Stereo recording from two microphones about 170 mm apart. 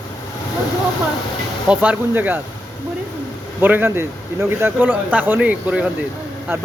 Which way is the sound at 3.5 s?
10° right (ahead or behind).